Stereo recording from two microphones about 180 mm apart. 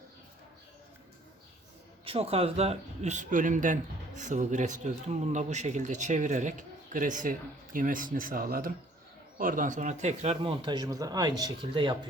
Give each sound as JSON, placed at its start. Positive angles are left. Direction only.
{"t": 2.0, "sound": "speech", "side_deg": -35}